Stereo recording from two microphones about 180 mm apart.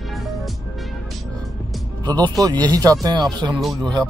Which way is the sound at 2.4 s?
20° right (ahead or behind).